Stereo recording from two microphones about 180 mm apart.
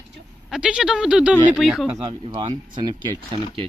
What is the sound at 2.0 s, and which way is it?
Speech, 25° right (ahead or behind).